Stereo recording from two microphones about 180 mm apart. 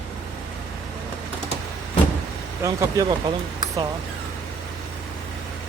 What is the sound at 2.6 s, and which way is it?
Speech, 20° right (ahead or behind).